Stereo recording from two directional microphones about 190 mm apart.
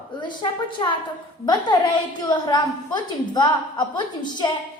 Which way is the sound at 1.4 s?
20° left (ahead or behind).